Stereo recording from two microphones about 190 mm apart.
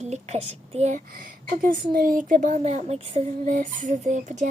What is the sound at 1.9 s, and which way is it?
Speech, 50° right (ahead or behind).